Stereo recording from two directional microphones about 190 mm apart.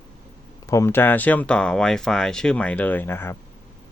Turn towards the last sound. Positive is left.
turn(degrees=10)  # may be behind; listen again after turning